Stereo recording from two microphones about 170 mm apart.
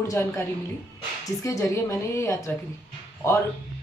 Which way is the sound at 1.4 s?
20° left (ahead or behind).